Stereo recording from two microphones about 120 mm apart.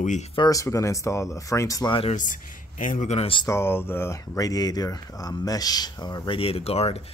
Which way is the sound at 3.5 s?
20° left (ahead or behind).